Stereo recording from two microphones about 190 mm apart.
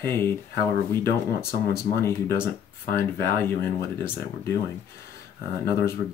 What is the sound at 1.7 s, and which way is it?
Speech, 15° left (ahead or behind).